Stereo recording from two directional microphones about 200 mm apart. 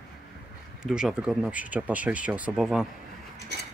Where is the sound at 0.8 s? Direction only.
5° right (ahead or behind).